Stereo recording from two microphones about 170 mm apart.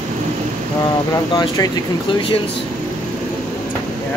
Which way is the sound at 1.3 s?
25° left (ahead or behind).